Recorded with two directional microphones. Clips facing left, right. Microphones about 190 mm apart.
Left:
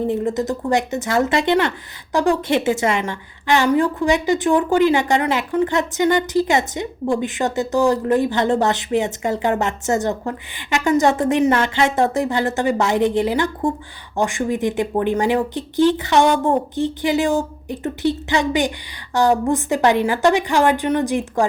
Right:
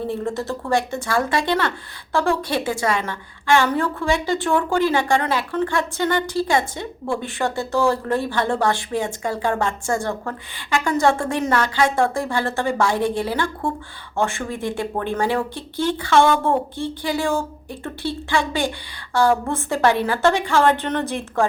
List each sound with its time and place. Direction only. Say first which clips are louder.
0.1 s a woman's voice: left 4 dB; 20° left (ahead or behind)